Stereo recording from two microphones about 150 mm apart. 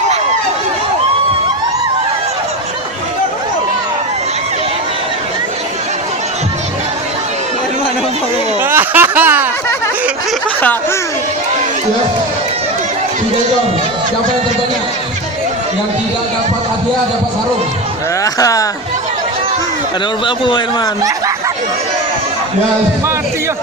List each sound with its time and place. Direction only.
8.6 s speech: 15° right (ahead or behind)
18.3 s chatter: 20° left (ahead or behind)
20.2 s a man's voice: 35° left (ahead or behind)